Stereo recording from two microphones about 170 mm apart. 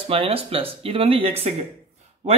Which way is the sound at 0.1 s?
35° right (ahead or behind).